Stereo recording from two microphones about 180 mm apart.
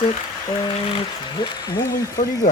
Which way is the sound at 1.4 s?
20° left (ahead or behind).